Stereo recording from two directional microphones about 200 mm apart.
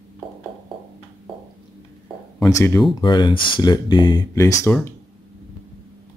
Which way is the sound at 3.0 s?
20° left (ahead or behind).